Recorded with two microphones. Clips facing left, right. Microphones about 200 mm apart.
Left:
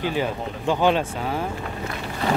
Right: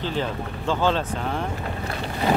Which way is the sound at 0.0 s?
10° left (ahead or behind).